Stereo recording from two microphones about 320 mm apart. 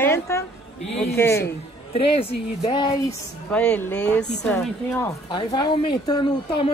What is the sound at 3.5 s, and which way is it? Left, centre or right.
A woman's voice, centre.